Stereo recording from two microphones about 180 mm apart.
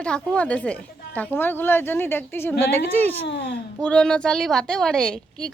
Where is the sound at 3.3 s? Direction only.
65° left (ahead or behind).